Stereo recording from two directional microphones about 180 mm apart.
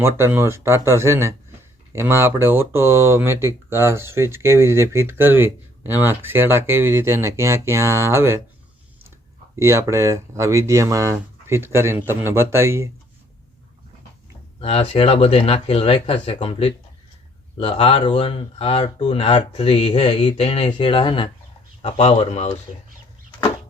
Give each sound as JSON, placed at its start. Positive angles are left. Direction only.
{"t": 0.0, "sound": "speech", "side_deg": -15}
{"t": 9.6, "sound": "speech", "side_deg": -15}
{"t": 14.6, "sound": "speech", "side_deg": 30}